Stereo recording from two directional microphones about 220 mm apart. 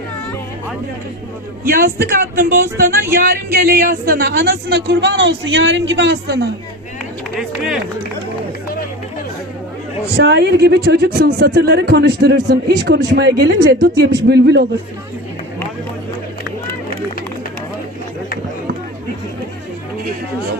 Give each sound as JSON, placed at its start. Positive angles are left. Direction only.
{"t": 1.6, "sound": "speech", "side_deg": -40}
{"t": 7.3, "sound": "speech", "side_deg": 0}
{"t": 10.2, "sound": "speech", "side_deg": -50}